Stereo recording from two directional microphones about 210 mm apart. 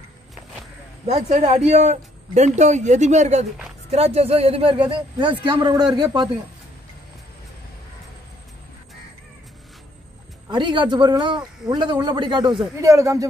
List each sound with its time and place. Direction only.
1.0 s a man's voice: 30° right (ahead or behind)
10.5 s a man's voice: 20° right (ahead or behind)